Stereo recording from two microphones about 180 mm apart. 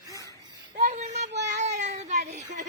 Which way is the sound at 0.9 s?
40° right (ahead or behind).